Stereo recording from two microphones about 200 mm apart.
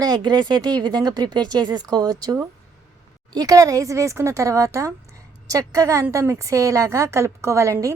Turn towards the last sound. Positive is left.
turn(degrees=-15)  # may be behind; listen again after turning